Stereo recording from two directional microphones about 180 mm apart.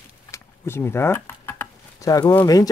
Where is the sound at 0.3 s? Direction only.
15° left (ahead or behind).